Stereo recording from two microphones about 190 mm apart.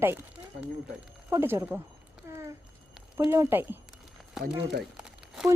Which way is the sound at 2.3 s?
15° right (ahead or behind).